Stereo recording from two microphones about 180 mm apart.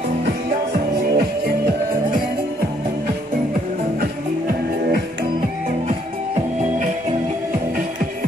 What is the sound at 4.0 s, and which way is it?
Music, 60° right (ahead or behind).